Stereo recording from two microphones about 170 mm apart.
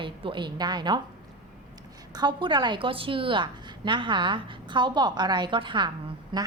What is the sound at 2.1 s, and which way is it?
A woman's voice, 25° right (ahead or behind).